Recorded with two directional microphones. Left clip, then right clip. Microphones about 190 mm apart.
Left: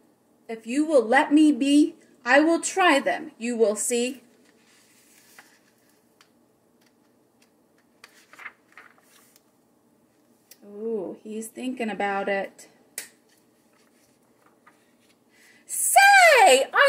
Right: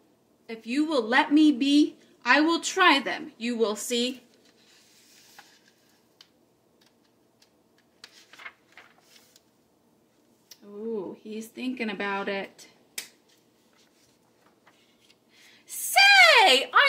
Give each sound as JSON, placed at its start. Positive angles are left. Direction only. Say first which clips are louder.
{"t": 0.5, "sound": "a woman's voice", "louder": "left 4 dB", "side_deg": 0}
{"t": 11.2, "sound": "a woman's voice", "louder": "left 2 dB", "side_deg": 0}
{"t": 15.6, "sound": "a sound", "louder": "left 3 dB", "side_deg": 0}